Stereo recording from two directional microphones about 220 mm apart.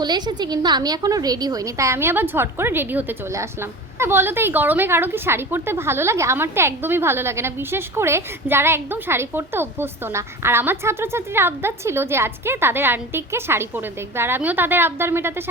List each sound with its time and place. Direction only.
0.0 s a woman's voice: 20° right (ahead or behind)